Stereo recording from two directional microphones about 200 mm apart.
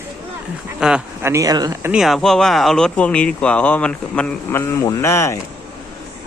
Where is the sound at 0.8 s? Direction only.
5° right (ahead or behind).